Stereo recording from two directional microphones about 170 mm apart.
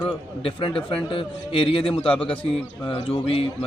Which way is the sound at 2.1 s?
5° left (ahead or behind).